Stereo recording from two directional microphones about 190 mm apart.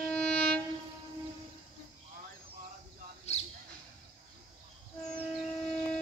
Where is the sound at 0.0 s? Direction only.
5° left (ahead or behind).